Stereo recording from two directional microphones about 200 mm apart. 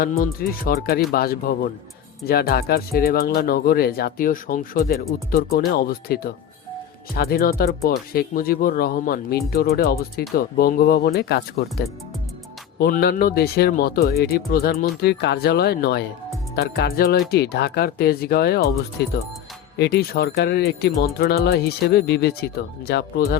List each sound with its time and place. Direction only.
0.2 s speech: 50° left (ahead or behind)
12.8 s speech: 50° left (ahead or behind)